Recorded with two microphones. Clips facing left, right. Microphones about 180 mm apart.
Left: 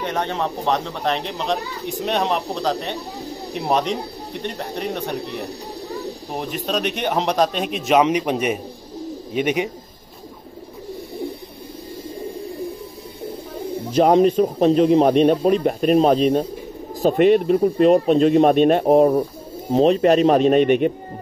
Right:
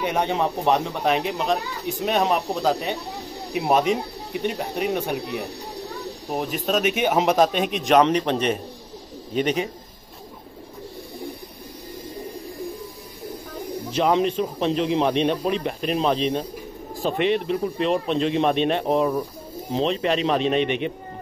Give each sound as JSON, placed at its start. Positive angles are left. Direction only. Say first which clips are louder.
{"t": 0.0, "sound": "speech", "louder": "right 1 dB", "side_deg": -10}
{"t": 13.3, "sound": "bird", "louder": "left 3 dB", "side_deg": 25}
{"t": 13.9, "sound": "speech", "louder": "left 6 dB", "side_deg": 45}